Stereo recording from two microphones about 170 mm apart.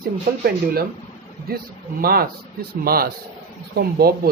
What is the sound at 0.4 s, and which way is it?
Speech, 65° right (ahead or behind).